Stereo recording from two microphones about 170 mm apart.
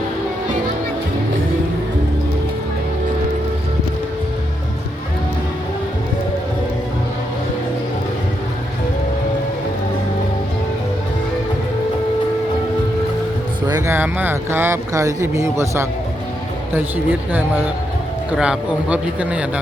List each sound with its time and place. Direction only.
13.7 s speech: 20° right (ahead or behind)